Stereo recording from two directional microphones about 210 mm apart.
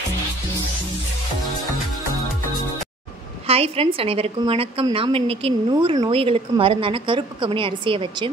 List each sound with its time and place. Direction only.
3.4 s a woman's voice: 30° right (ahead or behind)